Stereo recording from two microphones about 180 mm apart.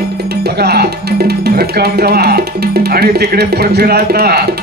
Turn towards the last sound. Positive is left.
turn(degrees=-60)  # may be behind; listen again after turning